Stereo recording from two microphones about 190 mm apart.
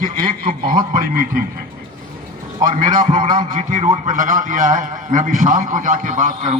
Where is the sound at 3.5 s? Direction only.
40° right (ahead or behind).